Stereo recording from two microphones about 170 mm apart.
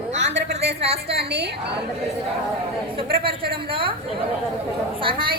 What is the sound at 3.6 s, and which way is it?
Chatter, 30° right (ahead or behind).